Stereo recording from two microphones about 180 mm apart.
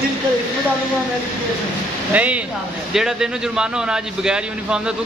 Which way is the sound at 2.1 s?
10° right (ahead or behind).